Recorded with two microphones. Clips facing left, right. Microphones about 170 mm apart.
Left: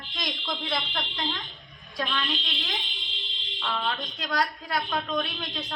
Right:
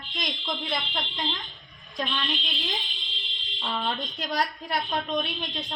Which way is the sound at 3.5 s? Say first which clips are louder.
Even; 25° right (ahead or behind).